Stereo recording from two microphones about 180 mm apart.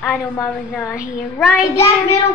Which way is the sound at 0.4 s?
10° left (ahead or behind).